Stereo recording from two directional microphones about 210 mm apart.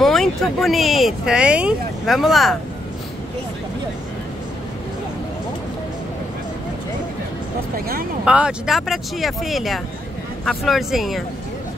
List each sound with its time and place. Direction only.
0.0 s speech: centre (ahead or behind)
7.7 s speech: 45° right (ahead or behind)
8.3 s speech: 5° right (ahead or behind)